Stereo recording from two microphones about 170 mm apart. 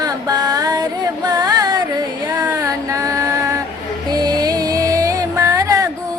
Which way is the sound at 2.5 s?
20° right (ahead or behind).